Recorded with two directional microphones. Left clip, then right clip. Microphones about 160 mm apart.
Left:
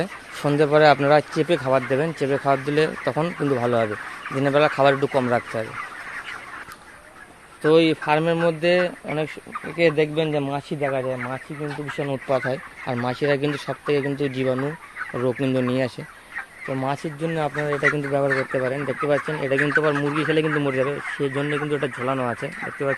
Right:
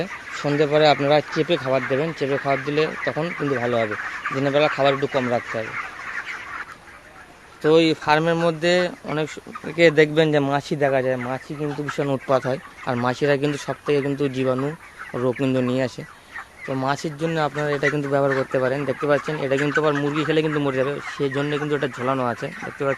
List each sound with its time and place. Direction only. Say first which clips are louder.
0.0 s speech: even; 15° left (ahead or behind)
7.6 s speech: even; centre (ahead or behind)
9.6 s speech: right 4 dB; 20° right (ahead or behind)
12.3 s speech: even; 15° right (ahead or behind)